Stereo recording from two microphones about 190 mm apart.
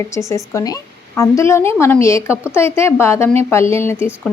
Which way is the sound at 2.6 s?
15° left (ahead or behind).